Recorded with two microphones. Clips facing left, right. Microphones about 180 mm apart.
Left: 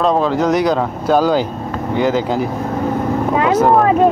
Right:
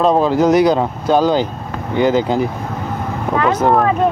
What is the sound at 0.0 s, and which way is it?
Speech, 5° right (ahead or behind).